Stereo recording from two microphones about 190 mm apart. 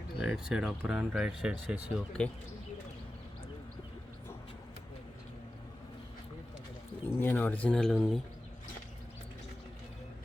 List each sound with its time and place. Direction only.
0.3 s speech: 5° right (ahead or behind)
7.1 s speech: 10° left (ahead or behind)